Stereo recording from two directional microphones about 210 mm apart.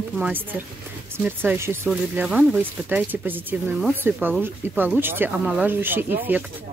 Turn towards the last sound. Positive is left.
turn(degrees=-10)  # may be behind; listen again after turning